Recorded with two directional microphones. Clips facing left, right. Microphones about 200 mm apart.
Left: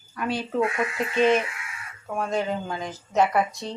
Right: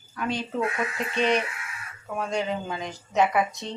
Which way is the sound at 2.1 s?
Centre (ahead or behind).